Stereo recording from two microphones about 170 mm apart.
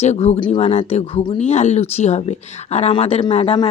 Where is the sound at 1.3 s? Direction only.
40° left (ahead or behind).